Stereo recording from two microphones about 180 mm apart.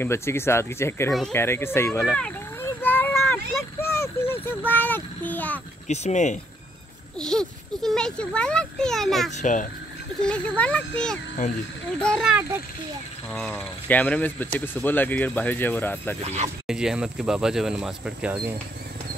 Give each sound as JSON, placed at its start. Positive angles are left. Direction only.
{"t": 0.0, "sound": "speech", "side_deg": 15}
{"t": 2.1, "sound": "a sound", "side_deg": 10}
{"t": 3.8, "sound": "a sound", "side_deg": 15}
{"t": 5.9, "sound": "speech", "side_deg": 40}
{"t": 7.2, "sound": "a child's voice", "side_deg": 5}
{"t": 9.3, "sound": "a child's voice", "side_deg": 45}
{"t": 10.2, "sound": "a child's voice", "side_deg": 5}
{"t": 16.2, "sound": "speech", "side_deg": -35}
{"t": 16.6, "sound": "a child's voice", "side_deg": -5}